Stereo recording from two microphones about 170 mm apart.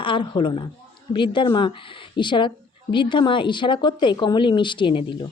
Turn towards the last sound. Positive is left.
turn(degrees=30)  # may be behind; listen again after turning